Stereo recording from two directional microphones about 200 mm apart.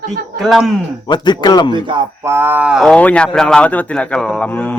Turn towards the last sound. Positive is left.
turn(degrees=10)  # may be behind; listen again after turning